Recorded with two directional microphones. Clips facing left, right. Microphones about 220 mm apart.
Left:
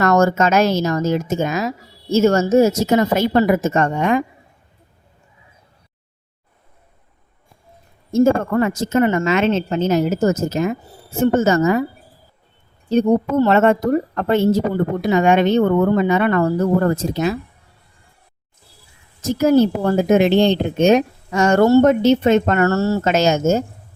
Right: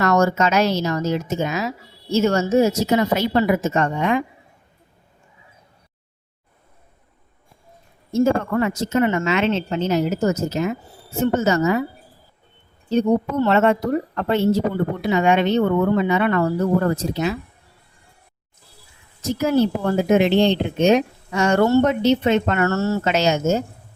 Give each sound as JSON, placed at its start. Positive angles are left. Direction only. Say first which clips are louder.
{"t": 0.0, "sound": "a woman's voice", "louder": "left 3 dB", "side_deg": 50}
{"t": 8.1, "sound": "a woman's voice", "louder": "left 3 dB", "side_deg": 45}
{"t": 12.9, "sound": "a woman's voice", "louder": "left 3 dB", "side_deg": 45}
{"t": 19.3, "sound": "a woman's voice", "louder": "left 4 dB", "side_deg": 45}